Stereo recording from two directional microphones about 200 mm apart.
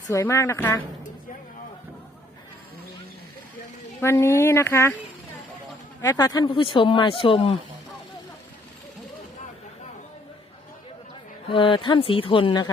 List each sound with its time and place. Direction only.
0.1 s speech: 15° left (ahead or behind)
4.0 s speech: 15° left (ahead or behind)
6.0 s speech: 15° left (ahead or behind)
11.4 s speech: 25° left (ahead or behind)